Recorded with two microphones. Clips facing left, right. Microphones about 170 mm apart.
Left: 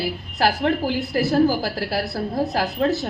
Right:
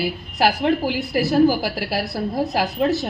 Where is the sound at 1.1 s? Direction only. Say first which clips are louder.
Right 2 dB; 15° right (ahead or behind).